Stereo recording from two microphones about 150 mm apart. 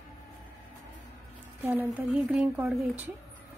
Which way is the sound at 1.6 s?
15° right (ahead or behind).